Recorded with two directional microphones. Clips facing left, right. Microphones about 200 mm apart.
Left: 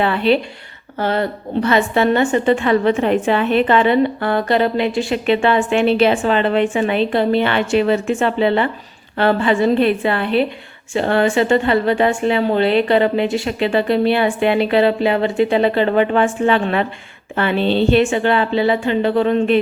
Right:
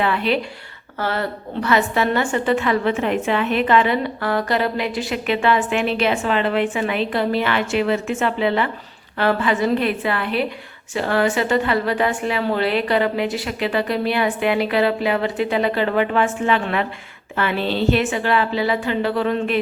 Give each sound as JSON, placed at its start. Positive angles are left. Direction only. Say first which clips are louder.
{"t": 0.0, "sound": "a woman's voice", "louder": "left 4 dB", "side_deg": 30}